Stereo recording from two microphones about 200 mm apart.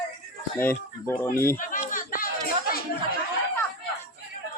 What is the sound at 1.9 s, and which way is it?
Music, 45° left (ahead or behind).